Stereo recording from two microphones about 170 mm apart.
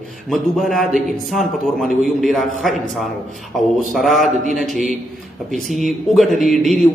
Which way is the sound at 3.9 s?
Centre (ahead or behind).